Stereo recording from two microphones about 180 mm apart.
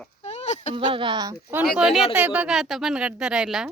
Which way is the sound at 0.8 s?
25° right (ahead or behind).